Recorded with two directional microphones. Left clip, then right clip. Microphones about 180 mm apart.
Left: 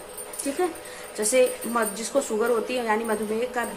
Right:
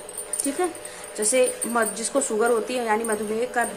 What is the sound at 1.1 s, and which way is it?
A woman's voice, centre (ahead or behind).